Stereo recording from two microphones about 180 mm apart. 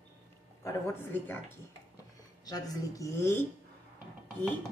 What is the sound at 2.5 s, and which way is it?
Speech, 15° left (ahead or behind).